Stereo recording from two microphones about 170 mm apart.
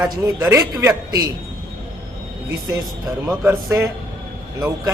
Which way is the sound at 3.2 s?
15° right (ahead or behind).